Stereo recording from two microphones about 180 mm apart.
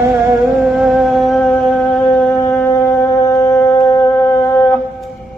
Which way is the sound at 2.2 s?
10° left (ahead or behind).